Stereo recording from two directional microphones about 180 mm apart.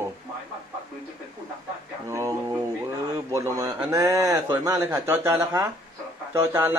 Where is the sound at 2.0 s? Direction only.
15° right (ahead or behind).